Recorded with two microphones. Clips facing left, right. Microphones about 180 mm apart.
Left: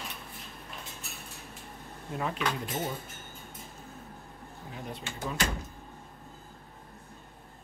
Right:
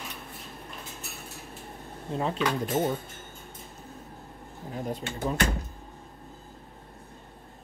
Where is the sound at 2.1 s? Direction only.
30° right (ahead or behind).